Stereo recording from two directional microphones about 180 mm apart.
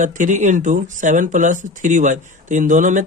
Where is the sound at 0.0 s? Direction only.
45° right (ahead or behind).